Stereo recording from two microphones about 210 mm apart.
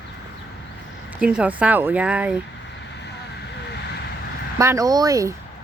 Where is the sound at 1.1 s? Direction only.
5° right (ahead or behind).